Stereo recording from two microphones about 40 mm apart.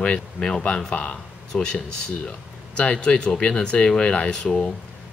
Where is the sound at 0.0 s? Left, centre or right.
Left.